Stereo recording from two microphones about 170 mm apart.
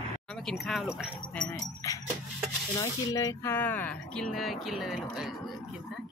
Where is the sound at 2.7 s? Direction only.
20° left (ahead or behind).